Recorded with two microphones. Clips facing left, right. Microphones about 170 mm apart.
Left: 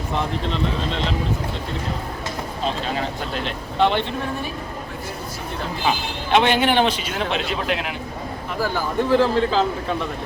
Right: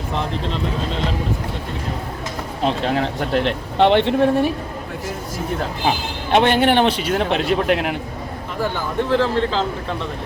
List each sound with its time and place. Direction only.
2.6 s speech: 65° right (ahead or behind)
6.3 s a man's voice: 50° right (ahead or behind)
9.0 s speech: 10° left (ahead or behind)